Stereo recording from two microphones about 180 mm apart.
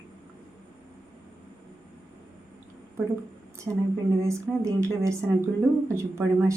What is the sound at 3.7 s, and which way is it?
Speech, 5° right (ahead or behind).